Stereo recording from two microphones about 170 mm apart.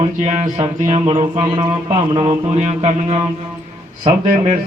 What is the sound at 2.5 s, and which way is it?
Speech, 45° right (ahead or behind).